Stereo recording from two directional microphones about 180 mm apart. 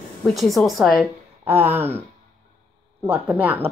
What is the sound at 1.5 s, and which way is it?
Speech, 10° right (ahead or behind).